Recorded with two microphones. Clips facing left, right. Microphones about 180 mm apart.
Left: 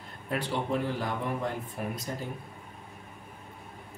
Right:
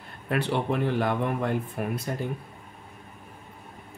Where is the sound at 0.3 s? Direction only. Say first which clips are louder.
Right 4 dB; 65° right (ahead or behind).